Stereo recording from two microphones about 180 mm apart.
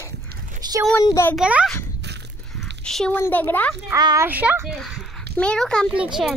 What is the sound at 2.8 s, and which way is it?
Speech, 5° left (ahead or behind).